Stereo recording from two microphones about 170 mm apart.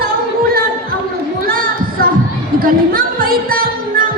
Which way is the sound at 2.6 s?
60° right (ahead or behind).